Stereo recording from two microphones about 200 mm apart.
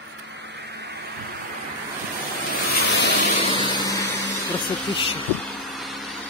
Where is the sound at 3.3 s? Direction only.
25° left (ahead or behind).